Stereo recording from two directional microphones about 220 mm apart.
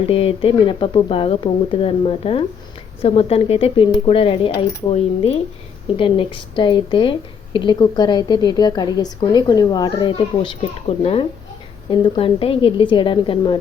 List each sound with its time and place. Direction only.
0.1 s a child's voice: 25° left (ahead or behind)